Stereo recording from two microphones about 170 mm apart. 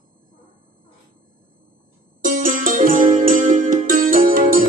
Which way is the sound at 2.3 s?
50° right (ahead or behind).